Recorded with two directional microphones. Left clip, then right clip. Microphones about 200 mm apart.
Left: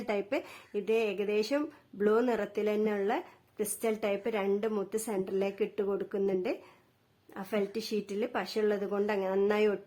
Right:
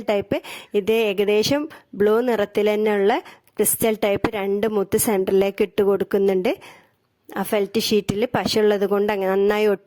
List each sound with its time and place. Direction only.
0.1 s speech: 45° right (ahead or behind)